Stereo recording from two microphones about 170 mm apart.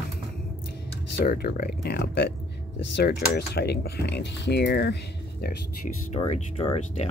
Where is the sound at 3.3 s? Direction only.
75° left (ahead or behind).